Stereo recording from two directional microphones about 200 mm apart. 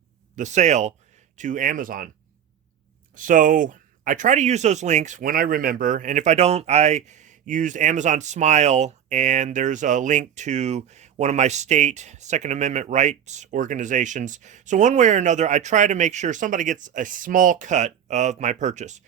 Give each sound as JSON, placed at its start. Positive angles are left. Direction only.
{"t": 0.3, "sound": "speech", "side_deg": -35}
{"t": 3.2, "sound": "speech", "side_deg": -40}